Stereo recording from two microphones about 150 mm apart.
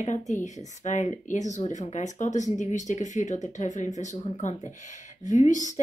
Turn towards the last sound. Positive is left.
turn(degrees=55)  # may be behind; listen again after turning